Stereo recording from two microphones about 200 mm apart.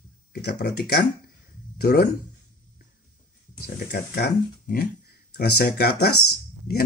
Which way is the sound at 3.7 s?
50° left (ahead or behind).